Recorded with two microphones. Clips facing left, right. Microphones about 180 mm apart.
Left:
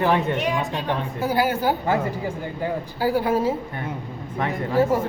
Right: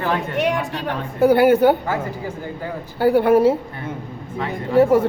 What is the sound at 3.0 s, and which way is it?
Speech, 65° right (ahead or behind).